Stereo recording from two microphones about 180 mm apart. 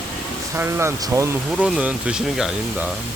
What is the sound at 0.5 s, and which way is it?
Speech, 15° right (ahead or behind).